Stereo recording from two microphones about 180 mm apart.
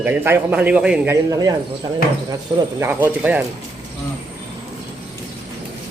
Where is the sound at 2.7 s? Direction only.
10° right (ahead or behind).